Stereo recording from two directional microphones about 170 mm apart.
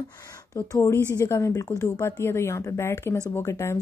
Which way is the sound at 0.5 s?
15° left (ahead or behind).